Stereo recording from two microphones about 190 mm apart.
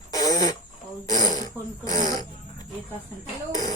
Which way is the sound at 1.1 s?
20° left (ahead or behind).